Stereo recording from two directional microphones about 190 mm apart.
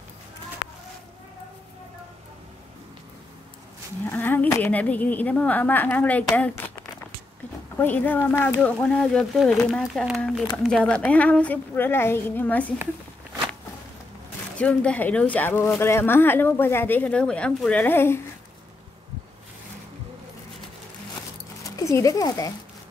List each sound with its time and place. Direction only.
4.0 s speech: 10° left (ahead or behind)
7.7 s speech: 10° left (ahead or behind)
14.6 s speech: 5° left (ahead or behind)
21.6 s speech: 15° left (ahead or behind)